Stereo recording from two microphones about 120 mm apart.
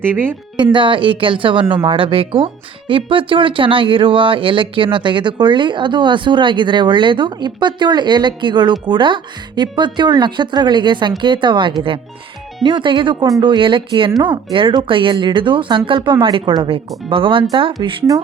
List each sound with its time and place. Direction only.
0.0 s speech: 15° right (ahead or behind)
0.5 s speech: 40° right (ahead or behind)